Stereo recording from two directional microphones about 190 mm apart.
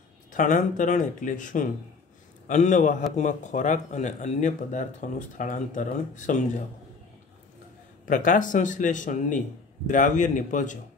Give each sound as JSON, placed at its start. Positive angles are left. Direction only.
{"t": 0.3, "sound": "speech", "side_deg": 40}
{"t": 8.0, "sound": "speech", "side_deg": 45}